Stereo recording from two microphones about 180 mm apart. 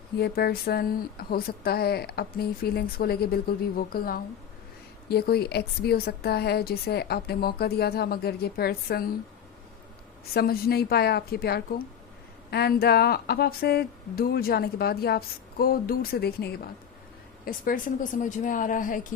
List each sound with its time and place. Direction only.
0.2 s a woman's voice: 60° left (ahead or behind)
10.3 s a woman's voice: 55° left (ahead or behind)
17.4 s speech: 50° left (ahead or behind)